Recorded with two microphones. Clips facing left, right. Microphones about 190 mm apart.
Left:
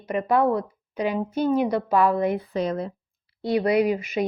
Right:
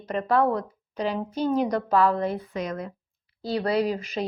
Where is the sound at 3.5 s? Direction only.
15° left (ahead or behind).